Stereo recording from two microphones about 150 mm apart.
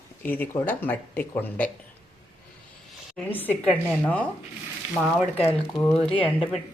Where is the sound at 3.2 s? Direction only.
10° left (ahead or behind).